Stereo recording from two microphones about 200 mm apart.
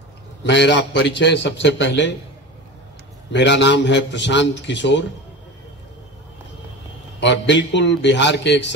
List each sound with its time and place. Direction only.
0.4 s a man's voice: 60° left (ahead or behind)
3.3 s a man's voice: 65° left (ahead or behind)
7.2 s a man's voice: 65° left (ahead or behind)